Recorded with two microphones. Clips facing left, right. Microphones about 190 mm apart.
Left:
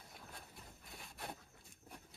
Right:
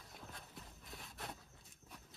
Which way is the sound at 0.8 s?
Centre (ahead or behind).